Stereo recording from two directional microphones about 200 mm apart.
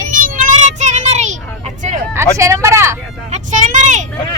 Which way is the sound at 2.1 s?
15° right (ahead or behind).